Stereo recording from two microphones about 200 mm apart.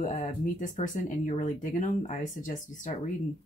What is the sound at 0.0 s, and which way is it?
Speech, 35° left (ahead or behind).